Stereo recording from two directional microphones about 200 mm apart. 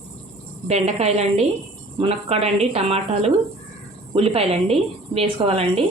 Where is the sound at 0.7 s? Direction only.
30° right (ahead or behind).